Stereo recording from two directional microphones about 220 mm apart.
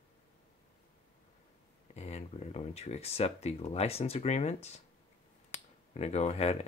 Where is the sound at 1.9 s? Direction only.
30° left (ahead or behind).